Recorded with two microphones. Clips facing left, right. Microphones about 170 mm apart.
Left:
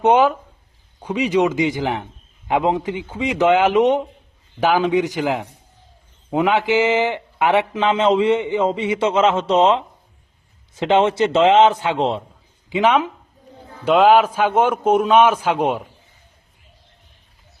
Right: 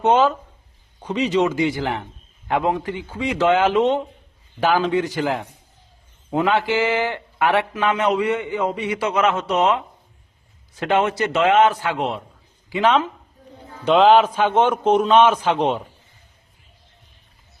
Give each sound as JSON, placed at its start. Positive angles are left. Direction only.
{"t": 0.0, "sound": "a man's voice", "side_deg": 15}
{"t": 12.7, "sound": "a man's voice", "side_deg": 15}